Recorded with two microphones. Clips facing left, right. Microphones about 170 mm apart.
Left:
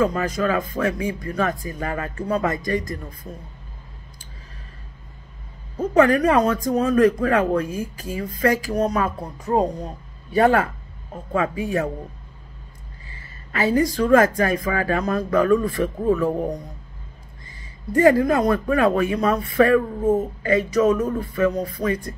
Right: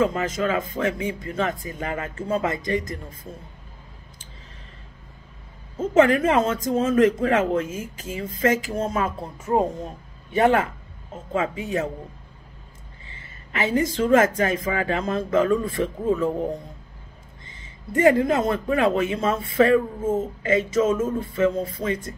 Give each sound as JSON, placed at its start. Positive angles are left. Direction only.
{"t": 0.0, "sound": "speech", "side_deg": -20}
{"t": 5.9, "sound": "speech", "side_deg": -25}
{"t": 10.3, "sound": "speech", "side_deg": -20}
{"t": 13.1, "sound": "speech", "side_deg": -20}
{"t": 16.3, "sound": "speech", "side_deg": 20}
{"t": 17.9, "sound": "speech", "side_deg": -20}